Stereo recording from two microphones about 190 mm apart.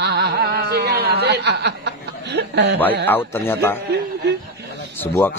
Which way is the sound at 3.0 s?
10° left (ahead or behind).